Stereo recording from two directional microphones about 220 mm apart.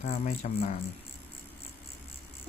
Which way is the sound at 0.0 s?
35° left (ahead or behind).